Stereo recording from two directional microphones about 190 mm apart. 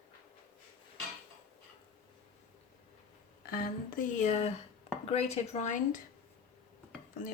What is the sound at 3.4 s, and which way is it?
Speech, 50° left (ahead or behind).